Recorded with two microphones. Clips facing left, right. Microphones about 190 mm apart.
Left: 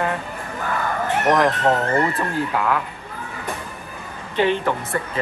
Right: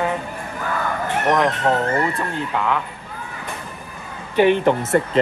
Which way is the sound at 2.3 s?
5° left (ahead or behind).